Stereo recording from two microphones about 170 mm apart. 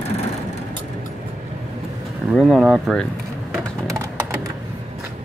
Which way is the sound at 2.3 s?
Centre (ahead or behind).